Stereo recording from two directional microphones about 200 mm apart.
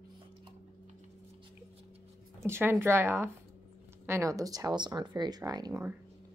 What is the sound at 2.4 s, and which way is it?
Speech, 10° right (ahead or behind).